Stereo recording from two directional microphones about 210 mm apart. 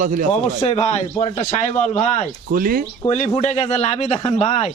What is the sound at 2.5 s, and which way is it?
Speech, 45° right (ahead or behind).